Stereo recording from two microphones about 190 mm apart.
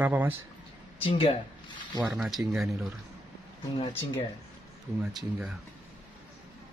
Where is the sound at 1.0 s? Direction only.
30° left (ahead or behind).